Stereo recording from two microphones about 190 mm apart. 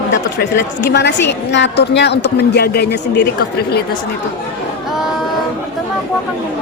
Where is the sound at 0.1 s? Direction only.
65° left (ahead or behind).